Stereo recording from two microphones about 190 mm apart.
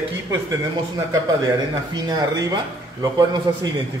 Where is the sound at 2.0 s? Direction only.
20° right (ahead or behind).